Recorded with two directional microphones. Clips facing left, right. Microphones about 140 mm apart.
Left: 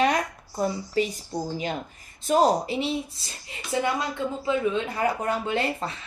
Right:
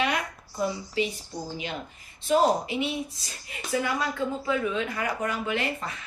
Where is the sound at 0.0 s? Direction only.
40° left (ahead or behind).